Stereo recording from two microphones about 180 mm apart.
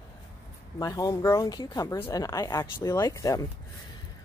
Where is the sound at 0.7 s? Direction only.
20° left (ahead or behind).